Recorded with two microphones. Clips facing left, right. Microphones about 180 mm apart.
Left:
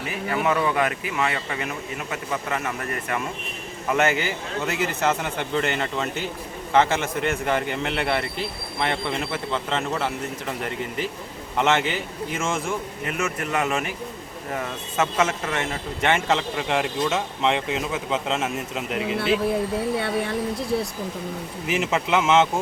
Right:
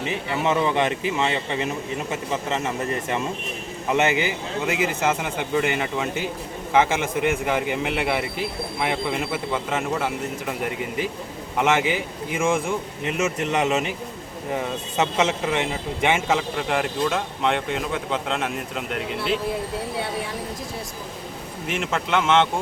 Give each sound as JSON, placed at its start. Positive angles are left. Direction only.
{"t": 0.0, "sound": "a man's voice", "side_deg": -25}
{"t": 21.7, "sound": "speech", "side_deg": 5}